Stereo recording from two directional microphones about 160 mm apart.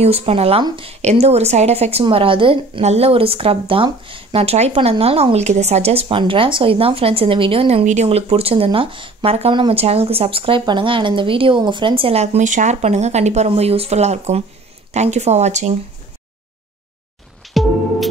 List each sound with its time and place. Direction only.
0.0 s a woman's voice: 40° right (ahead or behind)